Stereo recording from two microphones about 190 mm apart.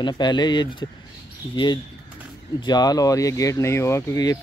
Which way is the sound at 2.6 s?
20° left (ahead or behind).